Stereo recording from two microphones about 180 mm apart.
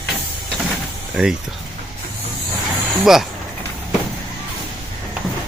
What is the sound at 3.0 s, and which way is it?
Speech, centre (ahead or behind).